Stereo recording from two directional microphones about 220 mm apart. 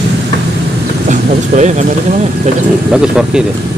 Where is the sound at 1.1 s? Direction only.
35° right (ahead or behind).